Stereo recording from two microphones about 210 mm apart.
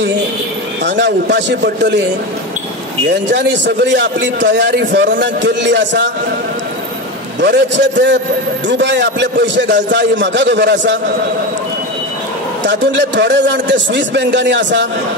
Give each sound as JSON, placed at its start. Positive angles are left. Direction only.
{"t": 0.8, "sound": "a man's voice", "side_deg": -60}
{"t": 3.3, "sound": "a man's voice", "side_deg": -60}
{"t": 7.3, "sound": "a man's voice", "side_deg": -55}
{"t": 12.6, "sound": "a man's voice", "side_deg": -60}